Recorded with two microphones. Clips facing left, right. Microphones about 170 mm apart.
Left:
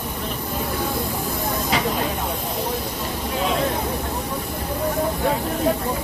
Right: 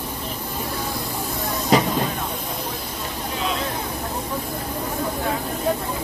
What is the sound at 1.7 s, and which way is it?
Hiss, 40° right (ahead or behind).